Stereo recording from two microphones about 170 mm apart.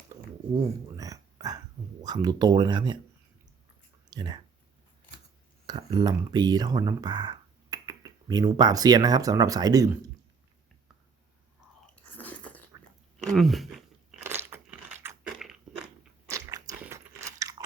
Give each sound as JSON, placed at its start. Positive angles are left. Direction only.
{"t": 0.9, "sound": "a sound", "side_deg": -20}
{"t": 2.0, "sound": "speech", "side_deg": -25}
{"t": 4.1, "sound": "speech", "side_deg": -25}
{"t": 5.6, "sound": "speech", "side_deg": -25}
{"t": 12.0, "sound": "biting", "side_deg": 10}
{"t": 13.1, "sound": "crunch", "side_deg": 0}
{"t": 14.2, "sound": "biting", "side_deg": -15}
{"t": 15.0, "sound": "crushing", "side_deg": -5}
{"t": 16.3, "sound": "biting", "side_deg": -20}